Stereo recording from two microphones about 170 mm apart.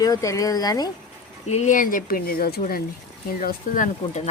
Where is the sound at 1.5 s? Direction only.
45° left (ahead or behind); by 2.8 s 60° left (ahead or behind).